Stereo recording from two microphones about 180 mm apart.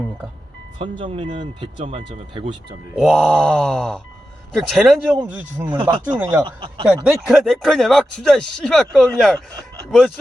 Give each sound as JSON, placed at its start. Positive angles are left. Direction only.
{"t": 0.8, "sound": "speech", "side_deg": -30}
{"t": 2.9, "sound": "speech", "side_deg": 0}
{"t": 5.6, "sound": "speech", "side_deg": -25}
{"t": 6.8, "sound": "speech", "side_deg": 0}